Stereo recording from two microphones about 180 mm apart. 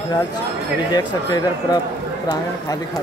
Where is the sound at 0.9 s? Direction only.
25° left (ahead or behind).